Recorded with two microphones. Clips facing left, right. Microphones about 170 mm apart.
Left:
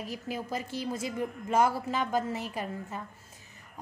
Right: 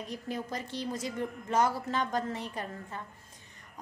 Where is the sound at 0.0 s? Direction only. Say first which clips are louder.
Left 1 dB; 5° left (ahead or behind).